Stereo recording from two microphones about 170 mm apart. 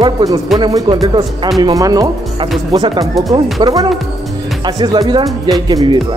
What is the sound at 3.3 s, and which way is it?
Speech, 25° right (ahead or behind).